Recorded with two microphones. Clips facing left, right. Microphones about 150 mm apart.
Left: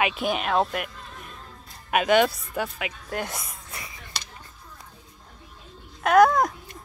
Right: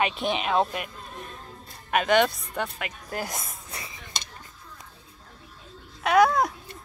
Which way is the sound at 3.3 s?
20° right (ahead or behind).